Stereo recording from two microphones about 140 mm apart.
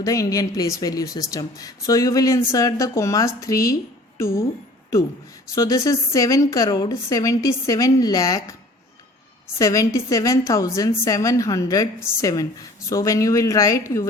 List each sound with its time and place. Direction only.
0.0 s a woman's voice: 25° left (ahead or behind)
5.5 s a woman's voice: 25° left (ahead or behind)
9.6 s a woman's voice: 25° left (ahead or behind)